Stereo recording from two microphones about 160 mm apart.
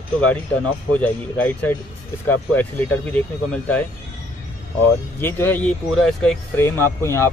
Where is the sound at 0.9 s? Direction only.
10° left (ahead or behind).